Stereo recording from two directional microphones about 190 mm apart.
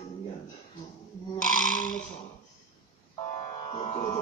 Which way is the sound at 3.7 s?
30° left (ahead or behind).